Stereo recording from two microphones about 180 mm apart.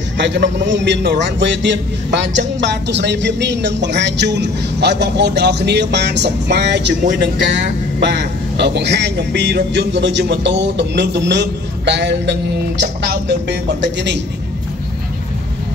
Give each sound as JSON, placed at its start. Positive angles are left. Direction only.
{"t": 0.2, "sound": "a man's voice", "side_deg": -75}
{"t": 7.1, "sound": "speech", "side_deg": -40}
{"t": 8.0, "sound": "a man's voice", "side_deg": -70}